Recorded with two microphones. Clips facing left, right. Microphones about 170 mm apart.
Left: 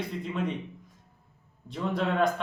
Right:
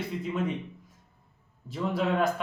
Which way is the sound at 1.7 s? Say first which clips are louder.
Right 1 dB; 5° right (ahead or behind).